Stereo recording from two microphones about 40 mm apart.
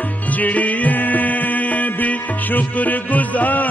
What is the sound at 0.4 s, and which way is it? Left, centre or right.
Music, left.